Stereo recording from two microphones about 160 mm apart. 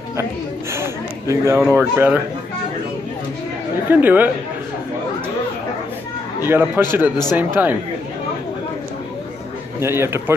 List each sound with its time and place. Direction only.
0.2 s speech: 15° right (ahead or behind)
3.9 s speech: 10° right (ahead or behind)
6.4 s speech: 10° right (ahead or behind)
9.8 s speech: 15° right (ahead or behind)